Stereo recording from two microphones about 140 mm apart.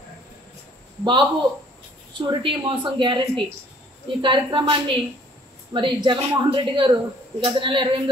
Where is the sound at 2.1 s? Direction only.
35° right (ahead or behind).